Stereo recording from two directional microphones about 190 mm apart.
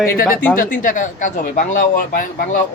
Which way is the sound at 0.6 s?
45° left (ahead or behind).